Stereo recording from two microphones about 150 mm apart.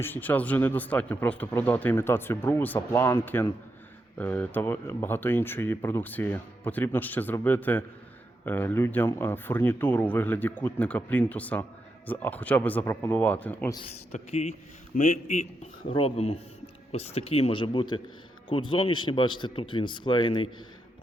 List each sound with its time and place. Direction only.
0.0 s speech: 10° left (ahead or behind)
14.1 s a man's voice: 45° left (ahead or behind)
14.9 s a man's voice: 55° left (ahead or behind); by 20.5 s 35° left (ahead or behind)